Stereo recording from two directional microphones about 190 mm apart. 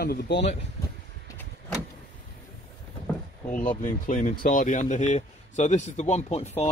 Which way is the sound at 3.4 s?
40° left (ahead or behind).